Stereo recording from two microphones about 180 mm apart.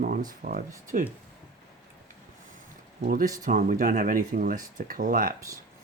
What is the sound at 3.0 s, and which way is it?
Speech, 50° right (ahead or behind).